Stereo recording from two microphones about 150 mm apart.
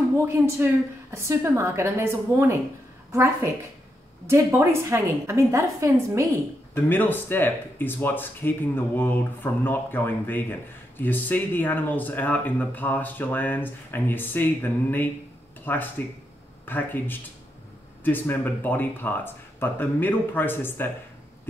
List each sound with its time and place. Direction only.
0.2 s a woman's voice: 15° right (ahead or behind)
4.3 s a woman's voice: 15° right (ahead or behind)
6.7 s speech: 15° left (ahead or behind)